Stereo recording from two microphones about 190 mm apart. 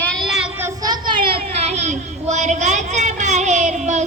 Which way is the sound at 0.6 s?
20° right (ahead or behind).